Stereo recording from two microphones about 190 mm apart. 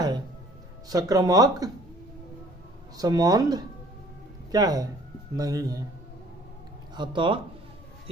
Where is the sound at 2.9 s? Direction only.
20° right (ahead or behind).